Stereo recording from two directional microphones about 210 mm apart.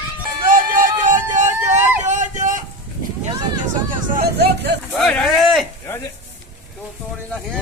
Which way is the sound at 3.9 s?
45° right (ahead or behind).